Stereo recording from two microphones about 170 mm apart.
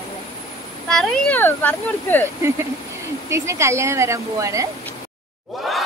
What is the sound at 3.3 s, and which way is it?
Speech, 15° right (ahead or behind).